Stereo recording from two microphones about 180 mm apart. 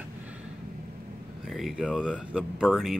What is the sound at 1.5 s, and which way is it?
Speech, centre (ahead or behind).